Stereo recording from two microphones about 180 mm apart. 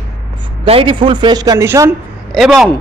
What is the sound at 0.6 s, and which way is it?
A man's voice, 30° right (ahead or behind).